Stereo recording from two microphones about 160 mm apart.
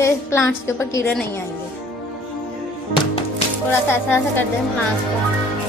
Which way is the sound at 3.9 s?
15° left (ahead or behind).